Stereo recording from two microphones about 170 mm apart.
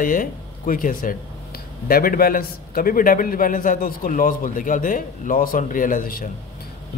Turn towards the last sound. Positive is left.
turn(degrees=55)  # may be behind; listen again after turning